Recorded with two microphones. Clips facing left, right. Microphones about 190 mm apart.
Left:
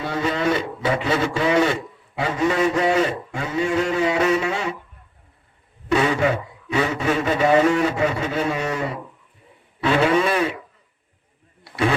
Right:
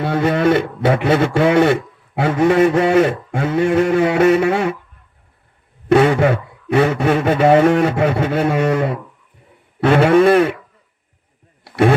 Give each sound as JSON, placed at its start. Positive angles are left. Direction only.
{"t": 0.0, "sound": "speech", "side_deg": -55}
{"t": 5.9, "sound": "speech", "side_deg": -55}
{"t": 11.6, "sound": "a sound", "side_deg": -55}